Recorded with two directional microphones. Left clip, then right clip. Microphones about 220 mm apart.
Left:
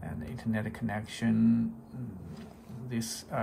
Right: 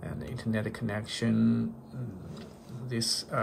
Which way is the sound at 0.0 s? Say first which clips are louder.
Right 1 dB; 10° right (ahead or behind).